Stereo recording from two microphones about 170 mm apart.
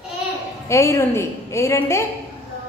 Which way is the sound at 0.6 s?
15° left (ahead or behind).